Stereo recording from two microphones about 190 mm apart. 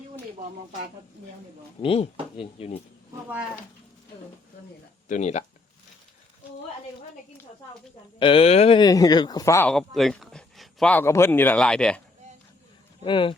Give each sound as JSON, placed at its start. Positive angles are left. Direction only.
{"t": 1.8, "sound": "speech", "side_deg": 30}
{"t": 5.0, "sound": "speech", "side_deg": 40}
{"t": 8.2, "sound": "speech", "side_deg": 30}
{"t": 9.7, "sound": "speech", "side_deg": 0}
{"t": 13.1, "sound": "speech", "side_deg": 25}